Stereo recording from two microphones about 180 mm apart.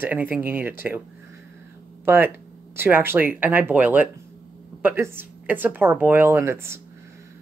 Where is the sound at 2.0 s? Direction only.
10° right (ahead or behind).